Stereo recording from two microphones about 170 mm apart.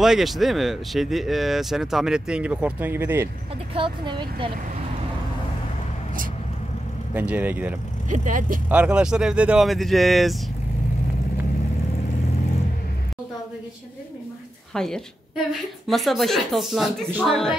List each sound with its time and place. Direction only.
0.0 s speech: centre (ahead or behind)
3.7 s speech: 30° right (ahead or behind)
7.2 s speech: 10° right (ahead or behind)
8.1 s speech: 50° right (ahead or behind)
8.6 s speech: 5° right (ahead or behind)
14.7 s a woman's voice: 5° left (ahead or behind)